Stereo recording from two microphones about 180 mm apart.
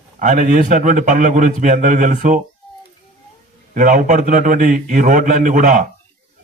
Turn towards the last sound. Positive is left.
turn(degrees=-45)  # may be behind; listen again after turning